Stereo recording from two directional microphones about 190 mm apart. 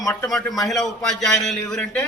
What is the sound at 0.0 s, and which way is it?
Speech, 15° left (ahead or behind).